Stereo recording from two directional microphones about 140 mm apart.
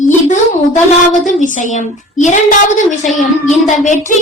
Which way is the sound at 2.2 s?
65° left (ahead or behind).